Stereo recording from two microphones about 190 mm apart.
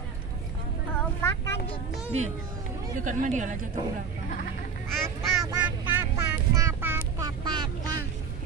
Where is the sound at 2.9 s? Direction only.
40° right (ahead or behind).